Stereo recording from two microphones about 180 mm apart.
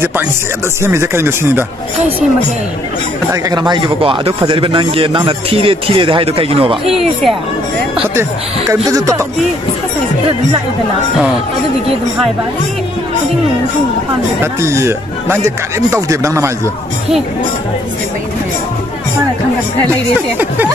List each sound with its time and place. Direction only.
0.8 s speech: 15° right (ahead or behind)
3.4 s speech: 25° right (ahead or behind)
6.9 s speech: centre (ahead or behind)
8.2 s speech: 20° right (ahead or behind)
14.4 s speech: 15° right (ahead or behind)